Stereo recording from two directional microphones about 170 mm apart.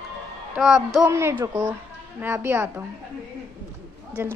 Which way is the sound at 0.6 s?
Centre (ahead or behind).